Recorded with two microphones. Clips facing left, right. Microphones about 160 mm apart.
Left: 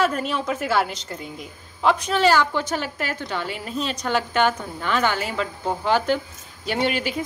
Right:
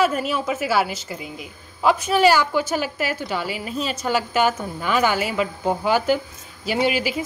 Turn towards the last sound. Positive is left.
turn(degrees=-5)  # may be behind; listen again after turning